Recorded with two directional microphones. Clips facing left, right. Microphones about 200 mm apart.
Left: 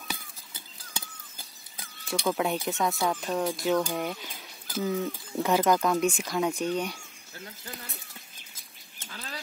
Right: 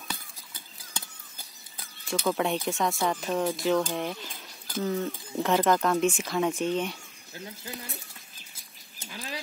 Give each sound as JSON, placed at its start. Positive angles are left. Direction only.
{"t": 2.0, "sound": "speech", "side_deg": 0}
{"t": 7.3, "sound": "speech", "side_deg": -15}
{"t": 9.0, "sound": "dog", "side_deg": -15}